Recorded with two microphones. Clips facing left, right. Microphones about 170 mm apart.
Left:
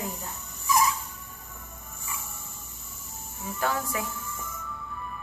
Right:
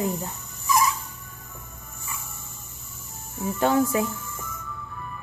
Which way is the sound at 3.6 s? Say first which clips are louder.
Right 8 dB; 25° right (ahead or behind).